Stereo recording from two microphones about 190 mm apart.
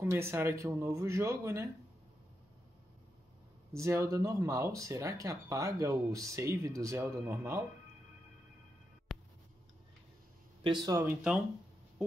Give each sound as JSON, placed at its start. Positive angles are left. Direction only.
{"t": 0.0, "sound": "speech", "side_deg": -10}
{"t": 3.7, "sound": "speech", "side_deg": -15}
{"t": 9.1, "sound": "a sound", "side_deg": 0}
{"t": 10.6, "sound": "speech", "side_deg": -25}